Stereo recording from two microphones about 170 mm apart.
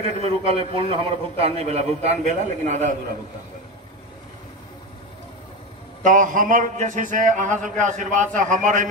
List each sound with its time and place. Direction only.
0.0 s a man's voice: 35° right (ahead or behind)
6.0 s a man's voice: 50° right (ahead or behind)